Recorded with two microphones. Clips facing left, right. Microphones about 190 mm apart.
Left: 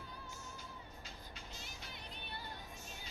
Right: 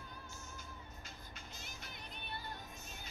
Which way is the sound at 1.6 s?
50° right (ahead or behind).